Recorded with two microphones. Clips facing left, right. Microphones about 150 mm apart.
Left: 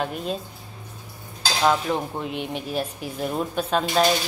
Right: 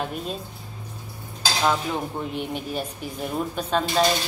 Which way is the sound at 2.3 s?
Centre (ahead or behind).